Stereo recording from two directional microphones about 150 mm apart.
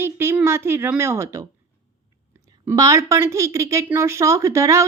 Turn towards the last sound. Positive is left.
turn(degrees=-20)  # may be behind; listen again after turning